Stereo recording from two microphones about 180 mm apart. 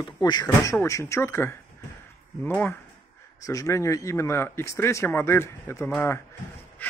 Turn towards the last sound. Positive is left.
turn(degrees=10)  # may be behind; listen again after turning